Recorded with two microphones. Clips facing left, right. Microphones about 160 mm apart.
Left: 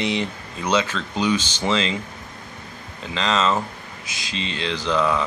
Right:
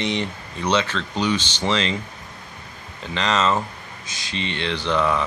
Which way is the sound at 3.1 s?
Centre (ahead or behind).